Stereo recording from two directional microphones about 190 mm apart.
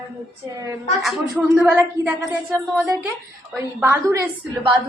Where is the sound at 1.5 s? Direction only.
10° right (ahead or behind).